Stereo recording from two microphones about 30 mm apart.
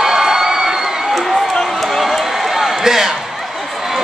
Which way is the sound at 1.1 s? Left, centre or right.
Centre.